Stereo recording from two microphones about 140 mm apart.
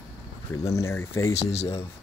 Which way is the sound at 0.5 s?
20° left (ahead or behind).